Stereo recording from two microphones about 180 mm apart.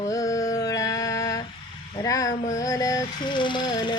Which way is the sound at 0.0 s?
20° left (ahead or behind).